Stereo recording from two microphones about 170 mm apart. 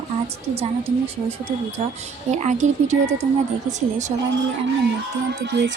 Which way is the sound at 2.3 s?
45° right (ahead or behind).